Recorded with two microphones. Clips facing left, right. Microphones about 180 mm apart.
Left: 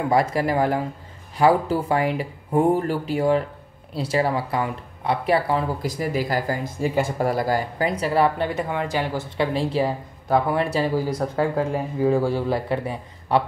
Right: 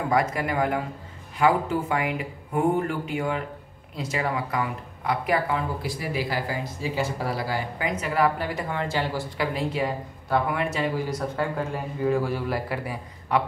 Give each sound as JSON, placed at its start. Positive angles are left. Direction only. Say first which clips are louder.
{"t": 0.1, "sound": "speech", "louder": "left 4 dB", "side_deg": 30}